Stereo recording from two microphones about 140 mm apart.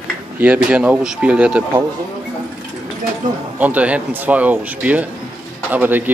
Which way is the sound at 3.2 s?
65° right (ahead or behind).